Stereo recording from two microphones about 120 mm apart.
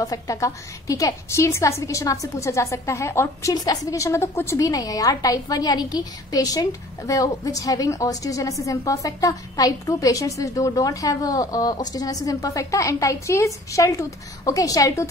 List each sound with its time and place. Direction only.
0.0 s a woman's voice: 30° left (ahead or behind)